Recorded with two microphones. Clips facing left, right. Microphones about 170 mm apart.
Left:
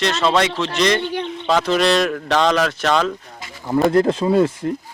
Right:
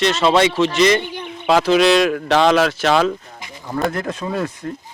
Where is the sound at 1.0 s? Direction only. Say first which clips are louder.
Left 6 dB; 65° left (ahead or behind).